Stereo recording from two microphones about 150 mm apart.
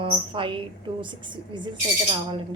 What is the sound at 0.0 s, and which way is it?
A woman's voice, 35° right (ahead or behind).